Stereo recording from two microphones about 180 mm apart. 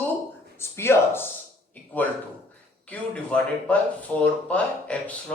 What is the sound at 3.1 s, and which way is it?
A man's voice, 5° left (ahead or behind).